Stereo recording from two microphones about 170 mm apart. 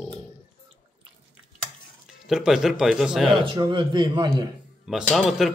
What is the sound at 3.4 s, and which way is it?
A man's voice, 25° right (ahead or behind).